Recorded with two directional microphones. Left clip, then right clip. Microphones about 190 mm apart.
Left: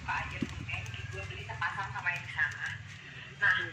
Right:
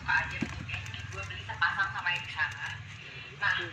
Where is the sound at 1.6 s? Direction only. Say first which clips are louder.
Right 6 dB; 10° left (ahead or behind).